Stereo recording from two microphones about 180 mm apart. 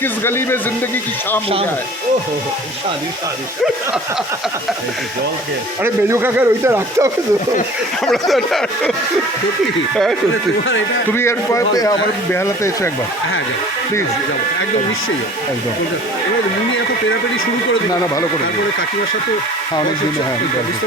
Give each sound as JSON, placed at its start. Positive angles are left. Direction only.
{"t": 0.0, "sound": "a man's voice", "side_deg": 10}
{"t": 5.8, "sound": "speech", "side_deg": -15}
{"t": 8.0, "sound": "speech", "side_deg": 0}
{"t": 11.1, "sound": "a man's voice", "side_deg": 15}